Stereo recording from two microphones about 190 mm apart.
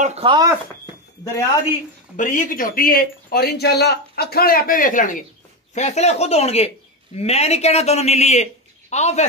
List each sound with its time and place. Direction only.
0.0 s speech: 30° right (ahead or behind)
2.1 s speech: 40° left (ahead or behind)